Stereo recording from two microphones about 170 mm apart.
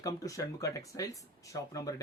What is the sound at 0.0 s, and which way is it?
Speech, 20° left (ahead or behind).